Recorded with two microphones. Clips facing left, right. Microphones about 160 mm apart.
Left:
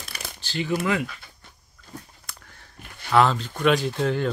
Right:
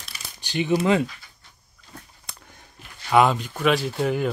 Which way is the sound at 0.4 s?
15° right (ahead or behind).